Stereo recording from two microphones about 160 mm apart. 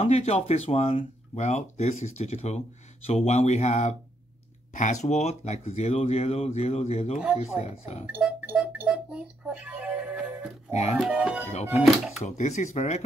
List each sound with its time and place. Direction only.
0.0 s speech: 40° left (ahead or behind)
8.2 s music: 5° right (ahead or behind)
11.0 s speech: 5° right (ahead or behind)
12.2 s speech: 45° left (ahead or behind)